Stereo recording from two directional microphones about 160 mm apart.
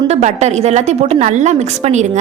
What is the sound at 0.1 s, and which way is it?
A woman's voice, 45° right (ahead or behind).